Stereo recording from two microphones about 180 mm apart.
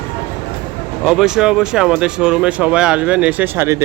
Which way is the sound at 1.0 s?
5° right (ahead or behind).